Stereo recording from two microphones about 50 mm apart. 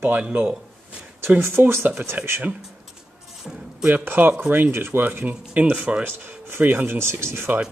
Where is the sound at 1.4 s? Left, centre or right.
Right.